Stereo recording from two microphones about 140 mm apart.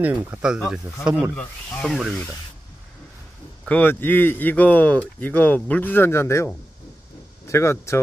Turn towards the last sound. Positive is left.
turn(degrees=20)  # may be behind; listen again after turning